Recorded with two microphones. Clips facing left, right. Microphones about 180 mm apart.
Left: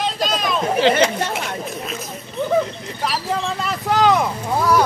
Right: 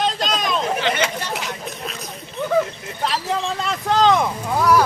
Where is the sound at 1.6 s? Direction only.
Centre (ahead or behind).